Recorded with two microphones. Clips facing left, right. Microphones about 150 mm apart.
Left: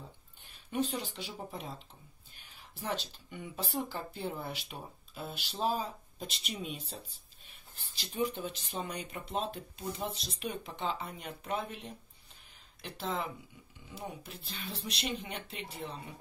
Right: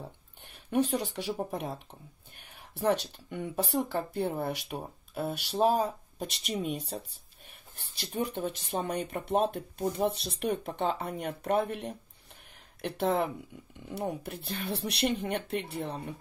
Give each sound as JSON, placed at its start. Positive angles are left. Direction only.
{"t": 0.0, "sound": "a sound", "side_deg": -60}
{"t": 1.1, "sound": "speech", "side_deg": -60}
{"t": 6.1, "sound": "speech", "side_deg": -60}
{"t": 8.0, "sound": "speech", "side_deg": -55}